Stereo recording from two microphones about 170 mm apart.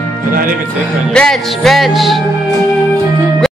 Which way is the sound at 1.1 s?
Centre (ahead or behind).